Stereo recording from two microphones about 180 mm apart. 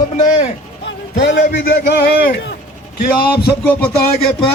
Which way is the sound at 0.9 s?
70° left (ahead or behind).